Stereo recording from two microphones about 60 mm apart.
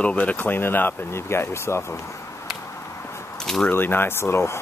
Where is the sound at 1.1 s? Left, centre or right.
Left.